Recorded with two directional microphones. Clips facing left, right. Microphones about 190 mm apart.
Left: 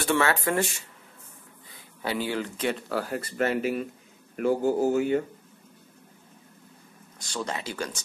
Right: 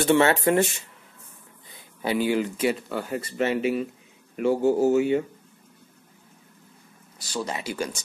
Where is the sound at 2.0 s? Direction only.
15° right (ahead or behind).